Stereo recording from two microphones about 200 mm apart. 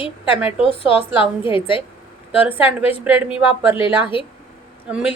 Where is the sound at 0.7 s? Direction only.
25° left (ahead or behind).